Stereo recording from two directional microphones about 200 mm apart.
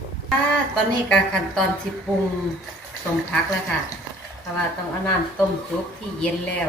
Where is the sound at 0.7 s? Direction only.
5° left (ahead or behind).